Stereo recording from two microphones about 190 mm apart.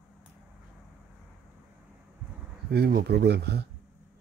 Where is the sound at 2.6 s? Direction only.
55° right (ahead or behind).